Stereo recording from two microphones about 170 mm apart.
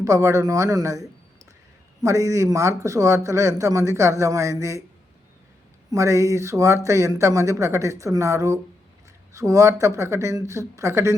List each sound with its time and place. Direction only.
0.0 s speech: 20° right (ahead or behind)
2.0 s speech: 20° right (ahead or behind)
5.9 s speech: 15° right (ahead or behind)